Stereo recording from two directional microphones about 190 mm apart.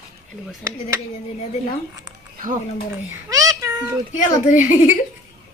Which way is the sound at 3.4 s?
15° right (ahead or behind).